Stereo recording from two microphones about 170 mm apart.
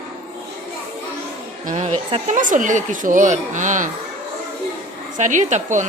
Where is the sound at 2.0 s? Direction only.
35° right (ahead or behind).